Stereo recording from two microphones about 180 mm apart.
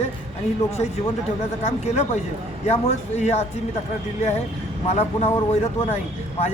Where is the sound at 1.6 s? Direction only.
35° left (ahead or behind).